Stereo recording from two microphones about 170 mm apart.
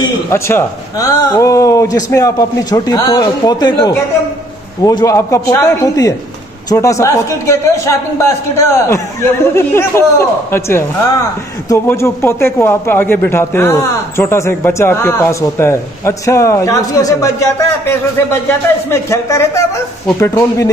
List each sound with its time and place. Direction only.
0.3 s a man's voice: 15° left (ahead or behind)